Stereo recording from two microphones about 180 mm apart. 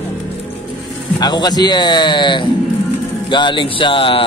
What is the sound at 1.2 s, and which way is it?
Speech, 25° left (ahead or behind).